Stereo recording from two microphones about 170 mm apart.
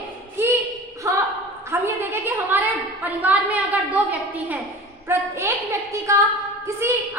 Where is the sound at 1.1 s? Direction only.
20° right (ahead or behind).